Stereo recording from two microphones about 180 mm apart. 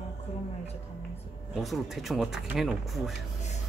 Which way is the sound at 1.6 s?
Centre (ahead or behind).